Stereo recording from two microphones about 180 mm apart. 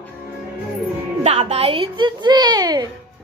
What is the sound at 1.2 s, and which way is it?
A woman's voice, 35° right (ahead or behind).